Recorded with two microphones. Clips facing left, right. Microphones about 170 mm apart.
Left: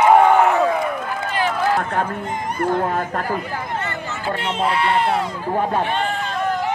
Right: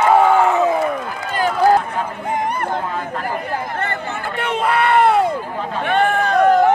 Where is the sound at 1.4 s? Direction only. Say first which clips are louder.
Right 6 dB; 45° right (ahead or behind).